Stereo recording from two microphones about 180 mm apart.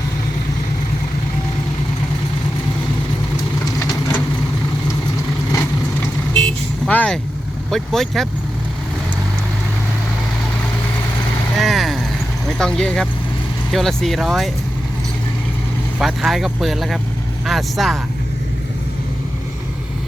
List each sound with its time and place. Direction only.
6.4 s vehicle: 5° left (ahead or behind)
7.7 s speech: centre (ahead or behind)
11.5 s vehicle: centre (ahead or behind)
12.5 s speech: 5° left (ahead or behind)
16.0 s speech: centre (ahead or behind)